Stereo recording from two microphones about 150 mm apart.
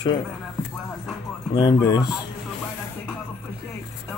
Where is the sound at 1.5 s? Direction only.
25° left (ahead or behind).